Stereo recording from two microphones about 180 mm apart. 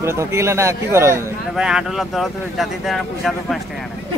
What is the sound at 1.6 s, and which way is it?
Speech, 5° right (ahead or behind).